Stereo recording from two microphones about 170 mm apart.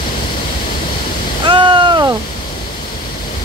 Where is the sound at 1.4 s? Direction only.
25° right (ahead or behind).